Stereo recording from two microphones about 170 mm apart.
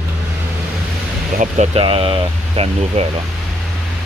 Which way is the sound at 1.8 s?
30° right (ahead or behind).